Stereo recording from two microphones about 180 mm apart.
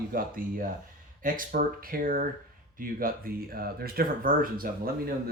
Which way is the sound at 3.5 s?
55° right (ahead or behind).